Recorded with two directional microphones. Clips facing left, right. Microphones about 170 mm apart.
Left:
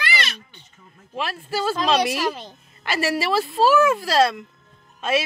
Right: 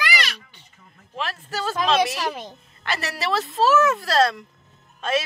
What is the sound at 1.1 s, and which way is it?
Speech, 10° left (ahead or behind).